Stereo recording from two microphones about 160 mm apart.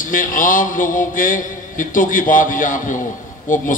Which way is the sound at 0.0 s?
55° left (ahead or behind).